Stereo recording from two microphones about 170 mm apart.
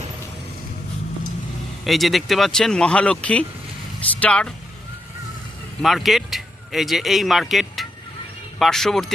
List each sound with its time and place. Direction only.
1.8 s speech: centre (ahead or behind)
5.8 s speech: centre (ahead or behind)